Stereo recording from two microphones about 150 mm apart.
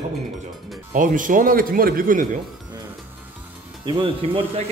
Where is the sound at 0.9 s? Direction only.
60° right (ahead or behind).